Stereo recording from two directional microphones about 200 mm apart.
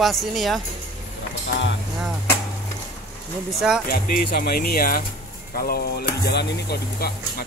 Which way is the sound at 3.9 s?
50° left (ahead or behind).